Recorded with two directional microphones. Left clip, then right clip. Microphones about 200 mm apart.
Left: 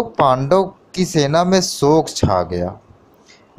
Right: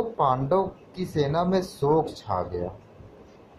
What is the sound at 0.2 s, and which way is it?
Speech, 50° left (ahead or behind).